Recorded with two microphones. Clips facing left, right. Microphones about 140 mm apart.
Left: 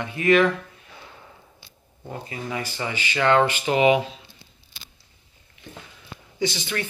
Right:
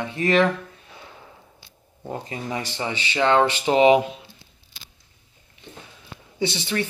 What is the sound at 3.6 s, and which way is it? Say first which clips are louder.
Speech: right 6 dB; 30° right (ahead or behind).